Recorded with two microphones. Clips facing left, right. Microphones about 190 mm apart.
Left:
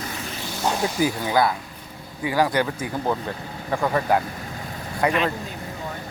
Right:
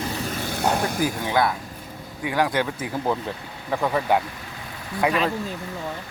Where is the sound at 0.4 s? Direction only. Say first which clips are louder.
Even; 60° right (ahead or behind).